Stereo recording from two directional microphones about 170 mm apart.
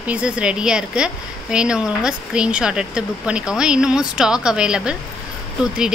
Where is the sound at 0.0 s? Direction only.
5° right (ahead or behind).